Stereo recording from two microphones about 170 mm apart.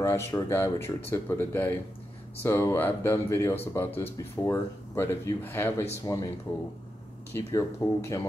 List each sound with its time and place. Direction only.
0.0 s speech: 15° left (ahead or behind)
7.3 s speech: 15° left (ahead or behind)